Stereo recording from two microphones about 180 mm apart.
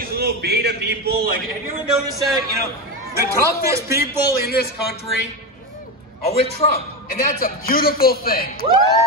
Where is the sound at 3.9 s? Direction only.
60° left (ahead or behind).